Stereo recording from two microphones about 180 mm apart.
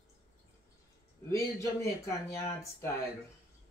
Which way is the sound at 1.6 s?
15° left (ahead or behind).